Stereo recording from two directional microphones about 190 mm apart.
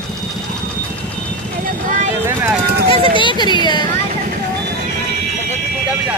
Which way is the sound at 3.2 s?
25° left (ahead or behind).